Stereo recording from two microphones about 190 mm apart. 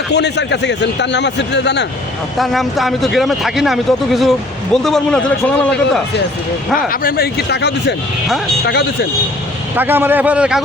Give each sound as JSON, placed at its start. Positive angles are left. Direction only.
{"t": 0.1, "sound": "a man's voice", "side_deg": 65}
{"t": 2.4, "sound": "speech", "side_deg": 0}
{"t": 6.7, "sound": "a man's voice", "side_deg": 50}
{"t": 9.7, "sound": "a man's voice", "side_deg": -10}